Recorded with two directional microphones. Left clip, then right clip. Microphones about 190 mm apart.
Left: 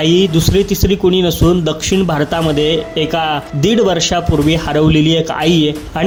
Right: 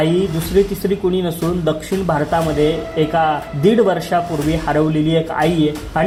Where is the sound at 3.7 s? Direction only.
25° left (ahead or behind).